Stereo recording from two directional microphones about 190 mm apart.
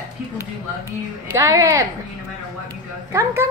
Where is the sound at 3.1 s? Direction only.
15° right (ahead or behind).